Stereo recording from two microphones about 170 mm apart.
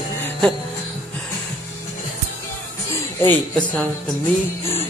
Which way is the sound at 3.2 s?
5° left (ahead or behind).